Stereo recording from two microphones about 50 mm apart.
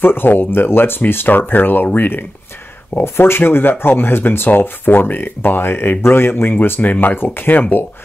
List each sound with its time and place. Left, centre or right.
0.0 s speech: left
3.0 s speech: left